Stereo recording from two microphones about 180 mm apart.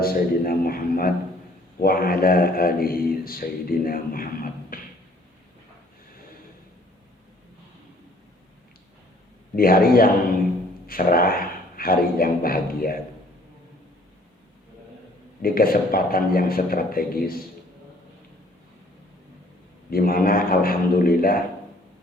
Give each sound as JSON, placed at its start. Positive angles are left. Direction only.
{"t": 0.0, "sound": "speech", "side_deg": 55}
{"t": 4.7, "sound": "a sound", "side_deg": 50}
{"t": 9.6, "sound": "speech", "side_deg": 55}
{"t": 15.4, "sound": "speech", "side_deg": 55}
{"t": 19.9, "sound": "speech", "side_deg": 55}